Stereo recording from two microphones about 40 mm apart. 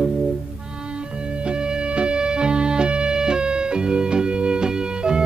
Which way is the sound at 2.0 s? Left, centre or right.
Right.